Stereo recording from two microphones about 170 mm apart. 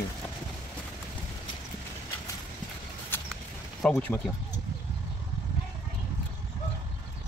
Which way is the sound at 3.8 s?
5° left (ahead or behind).